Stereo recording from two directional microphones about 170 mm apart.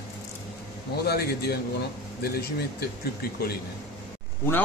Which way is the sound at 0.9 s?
65° left (ahead or behind).